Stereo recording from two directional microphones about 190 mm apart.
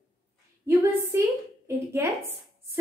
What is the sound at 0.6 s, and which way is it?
A woman's voice, 15° right (ahead or behind).